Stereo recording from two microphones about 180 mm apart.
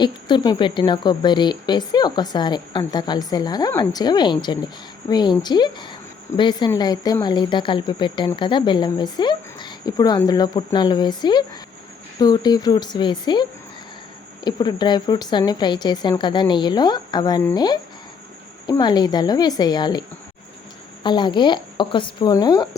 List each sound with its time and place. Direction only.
0.0 s a woman's voice: 25° left (ahead or behind)